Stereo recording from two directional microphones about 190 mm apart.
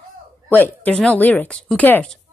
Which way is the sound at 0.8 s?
5° left (ahead or behind).